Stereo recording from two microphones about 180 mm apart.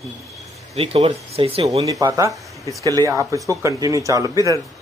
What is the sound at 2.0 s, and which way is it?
Speech, 20° right (ahead or behind).